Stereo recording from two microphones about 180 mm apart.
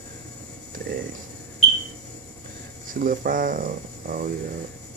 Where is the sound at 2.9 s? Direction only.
50° right (ahead or behind).